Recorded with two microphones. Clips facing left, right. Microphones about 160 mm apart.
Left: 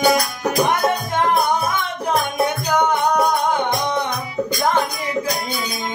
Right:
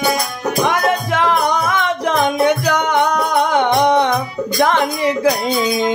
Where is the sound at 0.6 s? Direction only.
90° right.